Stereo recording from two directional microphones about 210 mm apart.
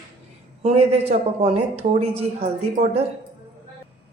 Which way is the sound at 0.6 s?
30° right (ahead or behind).